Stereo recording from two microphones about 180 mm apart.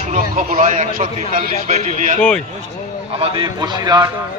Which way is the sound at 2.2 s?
5° left (ahead or behind).